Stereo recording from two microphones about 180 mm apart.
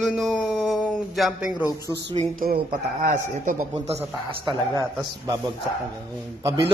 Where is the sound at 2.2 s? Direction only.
50° right (ahead or behind).